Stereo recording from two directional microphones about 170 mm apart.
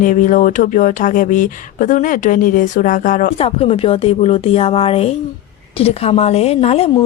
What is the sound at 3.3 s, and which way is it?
A woman's voice, 35° left (ahead or behind).